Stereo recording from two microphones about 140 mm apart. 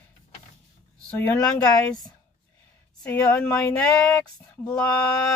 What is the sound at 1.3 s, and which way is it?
Speech, 25° left (ahead or behind).